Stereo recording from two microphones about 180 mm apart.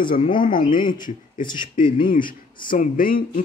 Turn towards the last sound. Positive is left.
turn(degrees=50)  # may be behind; listen again after turning